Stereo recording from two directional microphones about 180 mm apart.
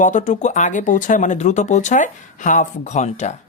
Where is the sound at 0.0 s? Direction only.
45° left (ahead or behind).